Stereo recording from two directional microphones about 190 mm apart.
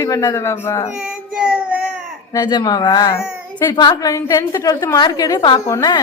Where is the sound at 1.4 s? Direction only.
5° right (ahead or behind).